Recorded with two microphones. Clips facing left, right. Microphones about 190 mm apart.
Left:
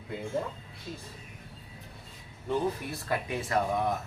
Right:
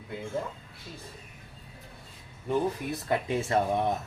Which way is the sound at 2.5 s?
20° right (ahead or behind).